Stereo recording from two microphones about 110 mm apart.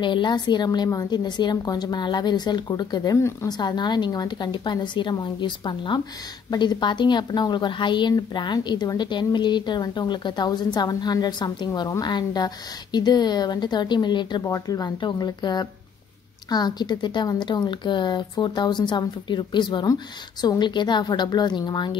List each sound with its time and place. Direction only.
0.0 s a woman's voice: 45° left (ahead or behind)
14.4 s a woman's voice: 30° left (ahead or behind)